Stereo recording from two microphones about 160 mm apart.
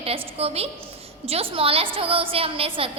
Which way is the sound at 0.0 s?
35° right (ahead or behind).